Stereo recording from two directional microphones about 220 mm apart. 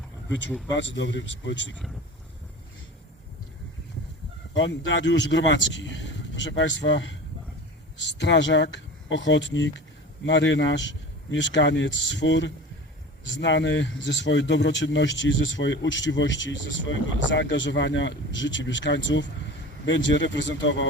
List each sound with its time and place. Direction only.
0.7 s speech: 55° left (ahead or behind)
4.5 s speech: 55° left (ahead or behind)
8.2 s speech: 55° left (ahead or behind)